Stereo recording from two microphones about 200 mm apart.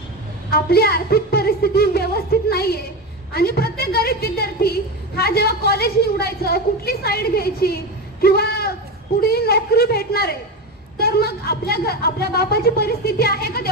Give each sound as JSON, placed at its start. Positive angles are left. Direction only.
{"t": 0.5, "sound": "a woman's voice", "side_deg": 50}